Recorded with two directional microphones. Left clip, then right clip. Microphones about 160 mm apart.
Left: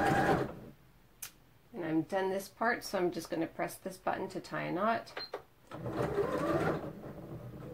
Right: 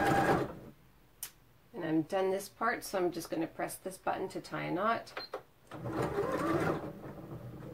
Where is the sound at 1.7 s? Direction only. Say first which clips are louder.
Right 1 dB; 15° left (ahead or behind).